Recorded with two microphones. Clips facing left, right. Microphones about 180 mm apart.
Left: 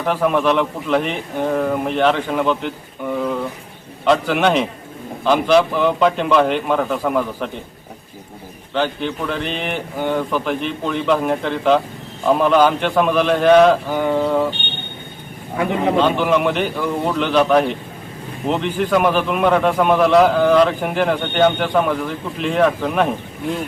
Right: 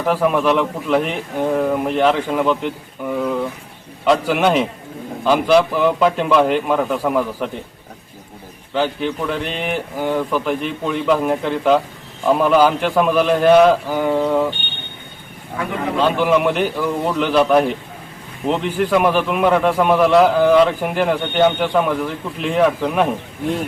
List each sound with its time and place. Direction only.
0.0 s a man's voice: 5° right (ahead or behind)
8.7 s a man's voice: 5° right (ahead or behind)
15.5 s a man's voice: 25° left (ahead or behind)
16.0 s a man's voice: 5° right (ahead or behind)